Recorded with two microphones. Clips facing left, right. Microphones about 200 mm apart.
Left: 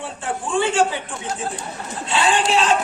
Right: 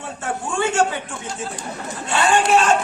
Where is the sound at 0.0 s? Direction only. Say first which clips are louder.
Even; 45° right (ahead or behind).